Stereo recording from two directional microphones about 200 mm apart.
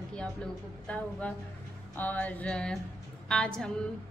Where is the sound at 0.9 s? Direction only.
5° left (ahead or behind).